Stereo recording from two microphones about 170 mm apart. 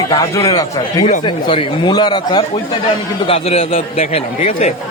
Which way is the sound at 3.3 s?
35° left (ahead or behind).